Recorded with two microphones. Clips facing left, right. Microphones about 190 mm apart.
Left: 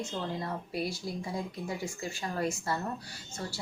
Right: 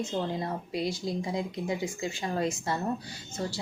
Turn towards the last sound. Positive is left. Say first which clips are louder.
# right 5 dB
turn(degrees=-20)  # may be behind; listen again after turning